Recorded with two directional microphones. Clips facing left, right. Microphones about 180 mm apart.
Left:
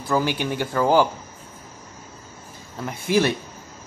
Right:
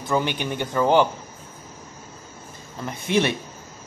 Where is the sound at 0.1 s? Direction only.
10° left (ahead or behind).